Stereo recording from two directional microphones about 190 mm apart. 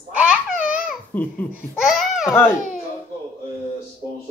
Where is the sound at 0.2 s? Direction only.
5° right (ahead or behind).